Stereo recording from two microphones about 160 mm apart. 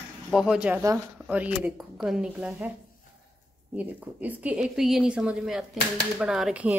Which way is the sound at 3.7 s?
10° right (ahead or behind).